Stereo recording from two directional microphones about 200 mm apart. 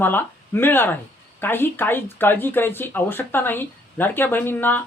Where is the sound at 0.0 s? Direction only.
10° left (ahead or behind).